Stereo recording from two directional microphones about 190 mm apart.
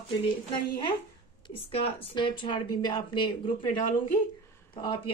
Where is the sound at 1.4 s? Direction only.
30° left (ahead or behind).